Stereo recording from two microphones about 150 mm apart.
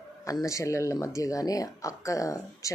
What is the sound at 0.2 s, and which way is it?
Speech, 20° left (ahead or behind).